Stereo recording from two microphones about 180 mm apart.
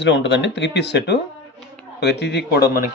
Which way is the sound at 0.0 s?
80° left.